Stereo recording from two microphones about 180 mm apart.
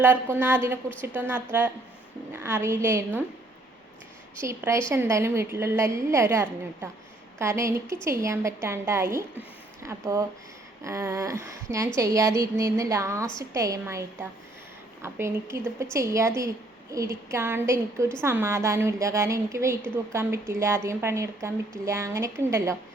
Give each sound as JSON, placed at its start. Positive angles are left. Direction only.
{"t": 0.0, "sound": "a woman's voice", "side_deg": -10}
{"t": 4.4, "sound": "a woman's voice", "side_deg": -15}